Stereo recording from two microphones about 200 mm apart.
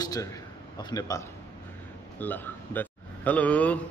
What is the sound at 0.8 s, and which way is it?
A man's voice, 20° left (ahead or behind).